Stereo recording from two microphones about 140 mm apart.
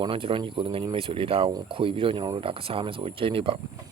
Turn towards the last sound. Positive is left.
turn(degrees=-40)  # may be behind; listen again after turning